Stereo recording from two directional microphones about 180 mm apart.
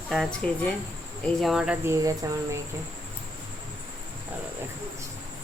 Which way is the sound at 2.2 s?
20° right (ahead or behind).